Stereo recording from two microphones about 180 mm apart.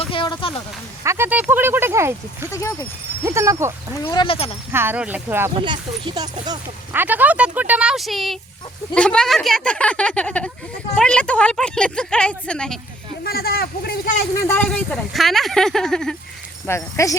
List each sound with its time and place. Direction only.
0.0 s a sound: 30° left (ahead or behind)
1.0 s speech: 15° right (ahead or behind)
2.5 s speech: 15° left (ahead or behind)
3.2 s speech: 15° right (ahead or behind)
4.0 s speech: 25° left (ahead or behind)
4.7 s speech: 10° right (ahead or behind)
5.5 s speech: 25° right (ahead or behind)
6.9 s speech: 10° right (ahead or behind)
13.2 s speech: 60° left (ahead or behind)
14.4 s speech: 10° left (ahead or behind)
16.6 s speech: 15° left (ahead or behind)